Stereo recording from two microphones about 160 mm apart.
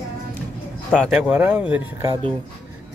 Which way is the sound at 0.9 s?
5° right (ahead or behind).